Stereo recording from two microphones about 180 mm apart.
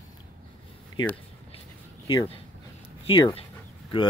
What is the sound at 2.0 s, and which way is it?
Speech, 30° left (ahead or behind).